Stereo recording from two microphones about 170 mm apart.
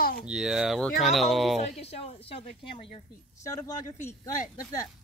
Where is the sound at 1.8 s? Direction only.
35° left (ahead or behind).